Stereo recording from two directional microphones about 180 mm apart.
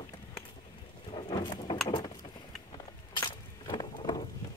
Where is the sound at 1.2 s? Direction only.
30° left (ahead or behind).